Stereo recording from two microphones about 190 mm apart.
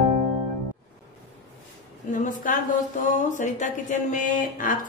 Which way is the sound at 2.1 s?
45° left (ahead or behind).